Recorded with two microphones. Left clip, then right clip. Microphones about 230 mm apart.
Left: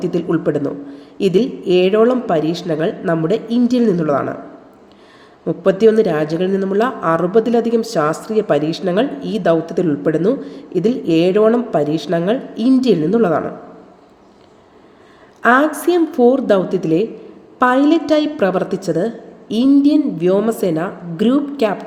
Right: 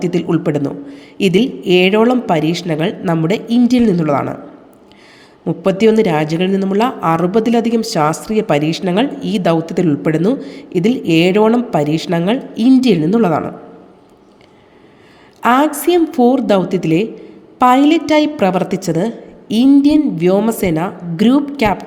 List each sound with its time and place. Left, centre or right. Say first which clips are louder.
0.0 s speech: right 1 dB; right
5.5 s speech: even; right
15.4 s speech: even; right